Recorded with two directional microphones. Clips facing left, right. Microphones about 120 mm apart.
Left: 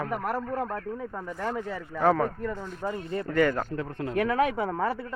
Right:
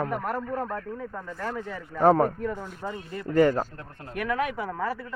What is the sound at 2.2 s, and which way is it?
Speech, 10° right (ahead or behind).